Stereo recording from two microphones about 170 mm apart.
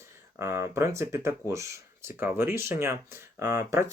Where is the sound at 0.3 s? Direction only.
15° right (ahead or behind).